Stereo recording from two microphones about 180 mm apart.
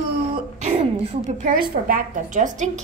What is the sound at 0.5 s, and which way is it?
A woman's voice, 40° right (ahead or behind).